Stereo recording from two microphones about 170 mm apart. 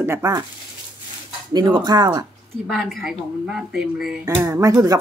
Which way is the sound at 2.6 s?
Centre (ahead or behind).